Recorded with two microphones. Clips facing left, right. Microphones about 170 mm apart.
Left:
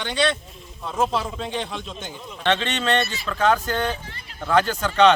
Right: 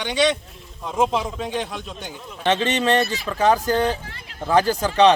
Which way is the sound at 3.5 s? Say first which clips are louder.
Right 5 dB; 35° right (ahead or behind).